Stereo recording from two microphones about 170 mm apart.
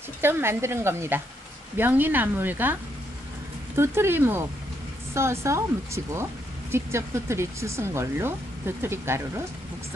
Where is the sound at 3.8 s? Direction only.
15° right (ahead or behind).